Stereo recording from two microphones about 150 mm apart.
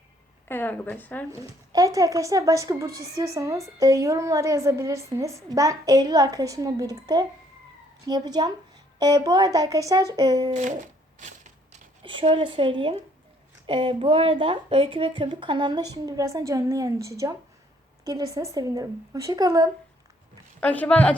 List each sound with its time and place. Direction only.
0.4 s a woman's voice: 15° left (ahead or behind)
1.3 s a woman's voice: 25° right (ahead or behind)
10.5 s speech: 55° right (ahead or behind)
11.2 s typewriter: 50° right (ahead or behind)
12.0 s a woman's voice: 35° right (ahead or behind)
20.6 s a woman's voice: 10° left (ahead or behind)